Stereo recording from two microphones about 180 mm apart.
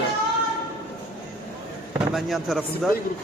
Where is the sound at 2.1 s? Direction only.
Centre (ahead or behind).